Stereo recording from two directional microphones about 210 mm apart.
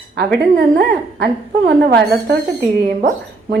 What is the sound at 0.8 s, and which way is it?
Speech, 50° right (ahead or behind).